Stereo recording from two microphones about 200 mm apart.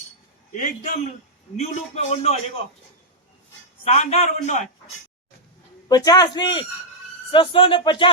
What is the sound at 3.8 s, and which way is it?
Speech, 35° left (ahead or behind).